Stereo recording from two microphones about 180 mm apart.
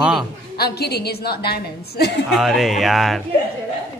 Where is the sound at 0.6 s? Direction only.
65° left (ahead or behind).